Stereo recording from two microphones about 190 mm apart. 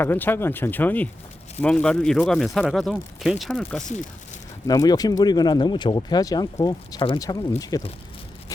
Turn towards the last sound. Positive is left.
turn(degrees=20)  # may be behind; listen again after turning